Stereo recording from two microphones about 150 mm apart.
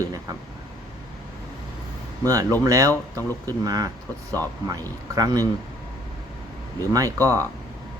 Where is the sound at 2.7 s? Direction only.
20° right (ahead or behind).